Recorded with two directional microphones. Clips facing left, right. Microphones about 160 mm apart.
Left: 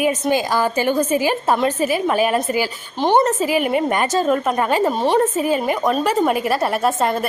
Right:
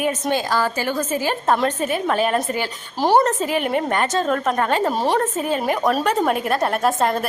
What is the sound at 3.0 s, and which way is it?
A woman's voice, 5° right (ahead or behind).